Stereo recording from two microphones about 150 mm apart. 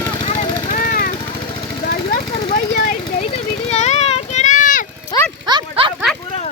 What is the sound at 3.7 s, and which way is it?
Vehicle, 45° left (ahead or behind).